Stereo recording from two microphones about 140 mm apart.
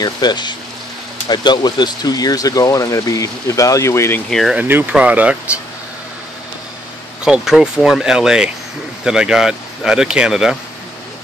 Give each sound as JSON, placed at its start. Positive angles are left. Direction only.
{"t": 0.0, "sound": "speech", "side_deg": 30}
{"t": 4.3, "sound": "speech", "side_deg": 0}
{"t": 4.6, "sound": "speech", "side_deg": -15}
{"t": 7.2, "sound": "speech", "side_deg": -5}